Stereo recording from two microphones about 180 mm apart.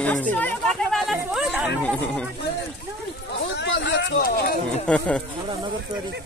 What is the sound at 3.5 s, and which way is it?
Speech, 75° left (ahead or behind).